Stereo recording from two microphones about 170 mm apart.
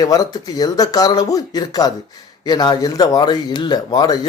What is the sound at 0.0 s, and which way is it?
Speech, 20° left (ahead or behind).